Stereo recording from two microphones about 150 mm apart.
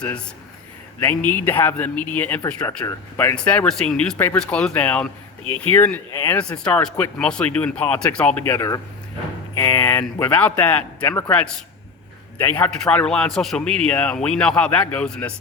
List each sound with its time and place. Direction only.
0.9 s a man's voice: 15° left (ahead or behind)